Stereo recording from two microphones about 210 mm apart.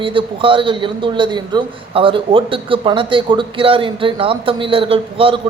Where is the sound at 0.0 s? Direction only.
25° right (ahead or behind).